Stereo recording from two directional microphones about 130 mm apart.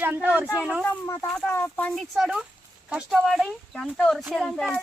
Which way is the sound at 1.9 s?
Centre (ahead or behind).